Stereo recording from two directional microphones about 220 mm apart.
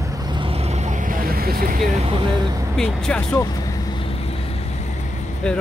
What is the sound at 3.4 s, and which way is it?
Vehicle, 15° left (ahead or behind).